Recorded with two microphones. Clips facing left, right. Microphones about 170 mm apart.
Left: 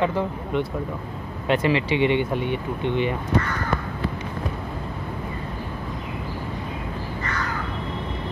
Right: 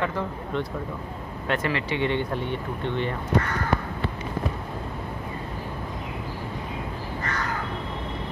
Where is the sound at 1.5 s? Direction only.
20° left (ahead or behind).